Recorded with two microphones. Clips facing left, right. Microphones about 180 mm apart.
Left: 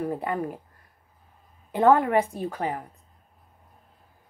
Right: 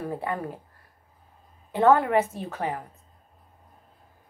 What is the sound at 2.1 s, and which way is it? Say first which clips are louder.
Speech: even; 10° left (ahead or behind).